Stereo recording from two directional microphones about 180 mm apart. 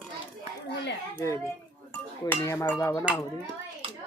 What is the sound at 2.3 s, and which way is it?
Speech, 10° left (ahead or behind).